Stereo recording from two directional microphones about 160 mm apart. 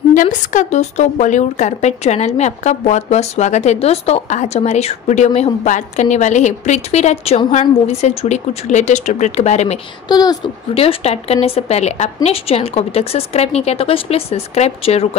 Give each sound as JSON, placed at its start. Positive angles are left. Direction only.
{"t": 0.1, "sound": "a woman's voice", "side_deg": 55}
{"t": 10.0, "sound": "a woman's voice", "side_deg": 25}